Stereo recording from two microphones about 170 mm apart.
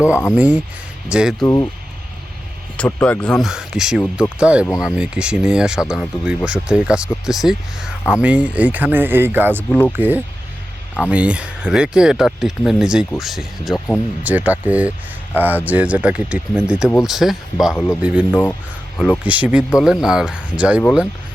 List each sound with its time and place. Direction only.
0.3 s speech: 10° right (ahead or behind)
1.5 s speech: 20° left (ahead or behind)
2.7 s speech: 10° left (ahead or behind); by 9.6 s 10° right (ahead or behind)
9.6 s speech: 10° left (ahead or behind)
9.9 s speech: 10° right (ahead or behind)
18.3 s speech: 10° left (ahead or behind)
19.2 s speech: 10° right (ahead or behind)